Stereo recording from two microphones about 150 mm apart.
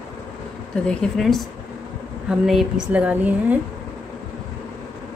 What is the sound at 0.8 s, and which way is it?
Speech, 5° left (ahead or behind).